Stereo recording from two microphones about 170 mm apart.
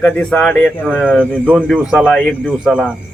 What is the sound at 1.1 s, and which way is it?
Speech, 5° right (ahead or behind).